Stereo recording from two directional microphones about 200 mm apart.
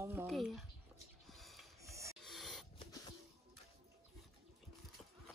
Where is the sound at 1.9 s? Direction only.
15° right (ahead or behind).